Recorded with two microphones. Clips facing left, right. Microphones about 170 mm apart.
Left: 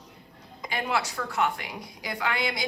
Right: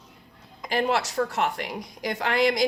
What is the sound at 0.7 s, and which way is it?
Speech, 40° right (ahead or behind).